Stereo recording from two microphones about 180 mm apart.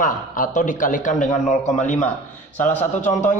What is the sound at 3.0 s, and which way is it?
Speech, 40° left (ahead or behind).